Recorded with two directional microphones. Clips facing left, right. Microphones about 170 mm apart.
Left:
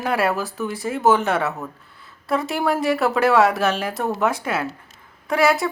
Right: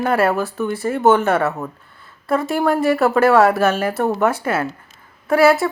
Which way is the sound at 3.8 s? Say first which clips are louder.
Right 4 dB; 60° right (ahead or behind).